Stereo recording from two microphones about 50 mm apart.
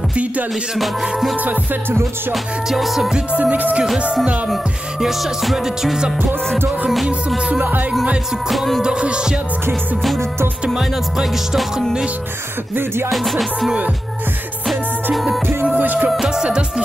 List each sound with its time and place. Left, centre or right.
0.1 s music: right
2.3 s music: centre
3.3 s music: right
4.0 s music: centre
5.0 s music: centre
8.5 s music: centre
8.8 s music: centre
10.7 s music: centre
12.7 s music: right
13.1 s music: centre
15.6 s music: right
16.3 s music: centre